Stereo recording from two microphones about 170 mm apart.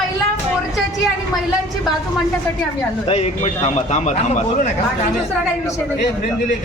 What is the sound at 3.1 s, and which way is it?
A man's voice, 40° left (ahead or behind).